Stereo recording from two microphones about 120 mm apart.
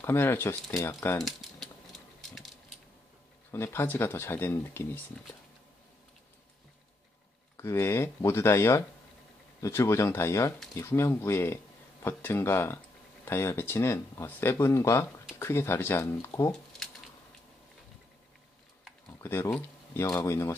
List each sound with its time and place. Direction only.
0.0 s speech: 20° left (ahead or behind)
1.1 s a sound: centre (ahead or behind)
3.5 s speech: 20° left (ahead or behind)
7.5 s speech: 25° left (ahead or behind)
19.2 s speech: 20° left (ahead or behind)